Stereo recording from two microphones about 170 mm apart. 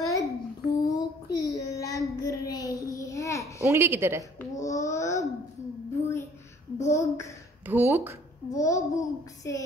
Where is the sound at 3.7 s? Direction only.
15° right (ahead or behind).